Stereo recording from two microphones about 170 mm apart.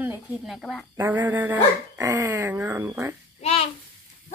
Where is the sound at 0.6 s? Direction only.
Centre (ahead or behind).